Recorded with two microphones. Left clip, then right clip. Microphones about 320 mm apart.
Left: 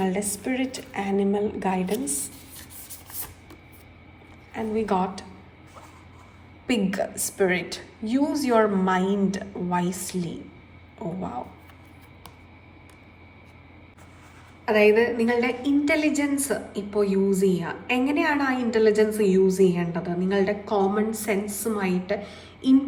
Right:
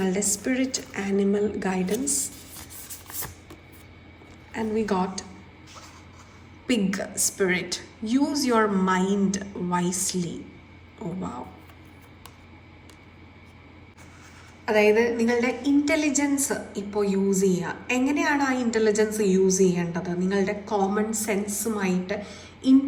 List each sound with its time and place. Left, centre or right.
0.0 s a woman's voice: centre
4.5 s a woman's voice: centre
6.7 s a woman's voice: centre
14.6 s a woman's voice: centre